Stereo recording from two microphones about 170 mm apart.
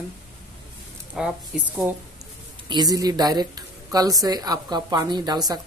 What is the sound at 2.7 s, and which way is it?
Speech, 20° right (ahead or behind).